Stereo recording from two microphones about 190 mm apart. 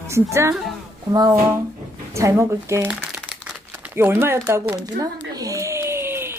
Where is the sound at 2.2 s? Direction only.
15° right (ahead or behind).